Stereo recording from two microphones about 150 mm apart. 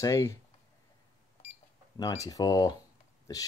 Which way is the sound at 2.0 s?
25° left (ahead or behind).